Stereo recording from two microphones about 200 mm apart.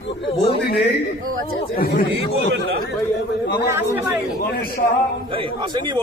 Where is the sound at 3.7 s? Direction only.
10° right (ahead or behind).